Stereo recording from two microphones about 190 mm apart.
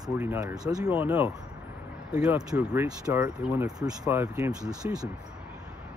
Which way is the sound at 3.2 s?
10° right (ahead or behind).